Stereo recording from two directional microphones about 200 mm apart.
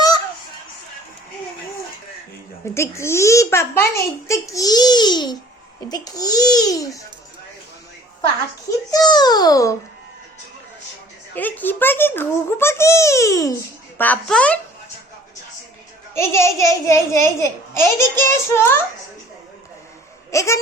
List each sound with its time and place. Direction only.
2.7 s a child's voice: 15° left (ahead or behind)
8.9 s a child's voice: 20° left (ahead or behind)
11.3 s a child's voice: 10° left (ahead or behind)
16.1 s a child's voice: 15° left (ahead or behind)
20.3 s speech: 15° left (ahead or behind)